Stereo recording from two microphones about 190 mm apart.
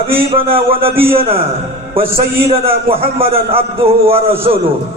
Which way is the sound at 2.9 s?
30° right (ahead or behind).